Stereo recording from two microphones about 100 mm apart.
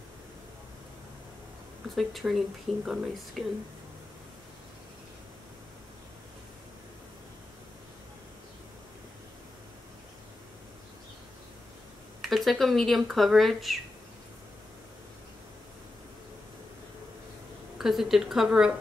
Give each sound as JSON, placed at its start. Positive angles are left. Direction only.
{"t": 2.0, "sound": "speech", "side_deg": 0}
{"t": 12.2, "sound": "speech", "side_deg": 0}
{"t": 17.7, "sound": "speech", "side_deg": 0}